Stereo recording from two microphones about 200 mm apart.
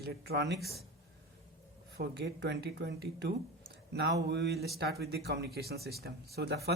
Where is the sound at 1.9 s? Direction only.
55° right (ahead or behind).